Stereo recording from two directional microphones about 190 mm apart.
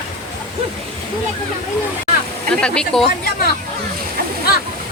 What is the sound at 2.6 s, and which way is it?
Speech, 5° left (ahead or behind).